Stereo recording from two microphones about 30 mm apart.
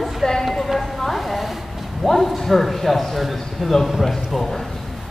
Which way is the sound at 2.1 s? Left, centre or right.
Centre.